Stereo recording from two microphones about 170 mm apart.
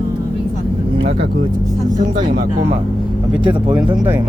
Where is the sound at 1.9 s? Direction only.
50° right (ahead or behind).